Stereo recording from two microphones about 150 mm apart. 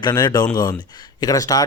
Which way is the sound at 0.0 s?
30° left (ahead or behind).